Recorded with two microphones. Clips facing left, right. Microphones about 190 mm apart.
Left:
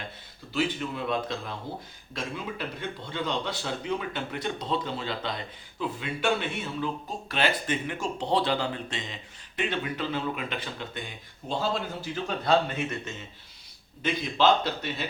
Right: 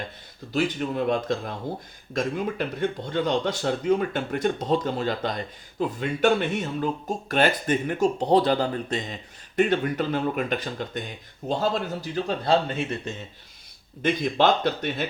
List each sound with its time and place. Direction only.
0.5 s speech: 45° right (ahead or behind)
12.5 s speech: 30° right (ahead or behind)
14.0 s speech: 50° right (ahead or behind)